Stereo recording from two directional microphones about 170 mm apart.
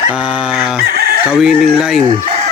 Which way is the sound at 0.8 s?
70° right (ahead or behind).